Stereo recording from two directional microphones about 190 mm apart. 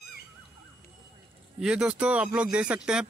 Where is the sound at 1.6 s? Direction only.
5° right (ahead or behind).